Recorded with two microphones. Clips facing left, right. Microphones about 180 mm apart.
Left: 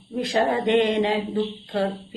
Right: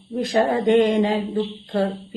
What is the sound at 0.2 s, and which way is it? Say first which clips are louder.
Speech: right 2 dB; 45° right (ahead or behind).